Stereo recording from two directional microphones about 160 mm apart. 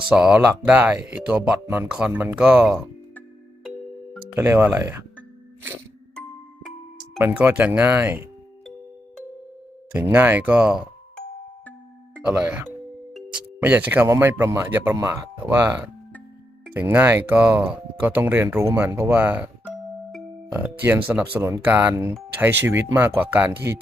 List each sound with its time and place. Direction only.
0.1 s speech: 5° right (ahead or behind)
4.4 s speech: 15° right (ahead or behind)
6.1 s music: 5° left (ahead or behind)
7.2 s speech: 15° right (ahead or behind)
10.1 s speech: 10° right (ahead or behind)
12.2 s speech: 5° right (ahead or behind)
16.8 s speech: 15° right (ahead or behind)
19.6 s music: centre (ahead or behind)
20.6 s speech: 10° right (ahead or behind)